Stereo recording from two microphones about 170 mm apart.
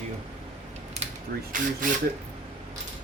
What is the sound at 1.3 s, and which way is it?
Speech, 60° right (ahead or behind).